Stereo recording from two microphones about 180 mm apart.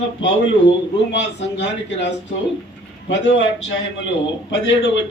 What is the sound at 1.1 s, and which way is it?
Speech, 75° left (ahead or behind).